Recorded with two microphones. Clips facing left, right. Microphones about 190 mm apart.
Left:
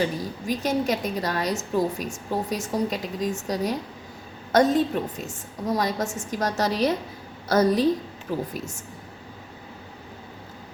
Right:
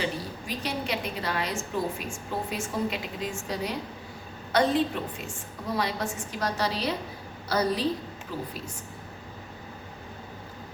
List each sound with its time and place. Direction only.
0.0 s a woman's voice: 45° left (ahead or behind)